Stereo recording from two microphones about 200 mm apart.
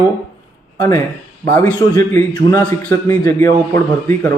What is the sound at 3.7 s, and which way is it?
Speech, 10° left (ahead or behind).